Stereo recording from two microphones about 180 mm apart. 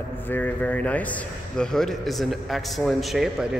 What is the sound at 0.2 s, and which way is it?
A man's voice, 10° left (ahead or behind).